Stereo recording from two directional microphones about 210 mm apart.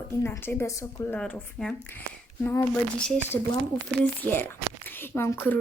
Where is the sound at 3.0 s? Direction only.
10° left (ahead or behind).